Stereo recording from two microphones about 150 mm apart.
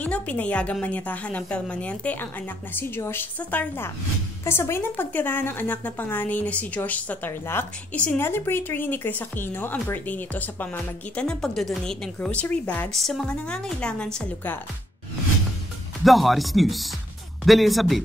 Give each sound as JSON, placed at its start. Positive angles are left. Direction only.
{"t": 0.0, "sound": "a woman's voice", "side_deg": 10}
{"t": 16.0, "sound": "speech", "side_deg": 0}